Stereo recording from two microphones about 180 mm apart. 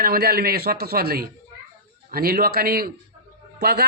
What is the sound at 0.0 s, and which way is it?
A man's voice, 55° right (ahead or behind).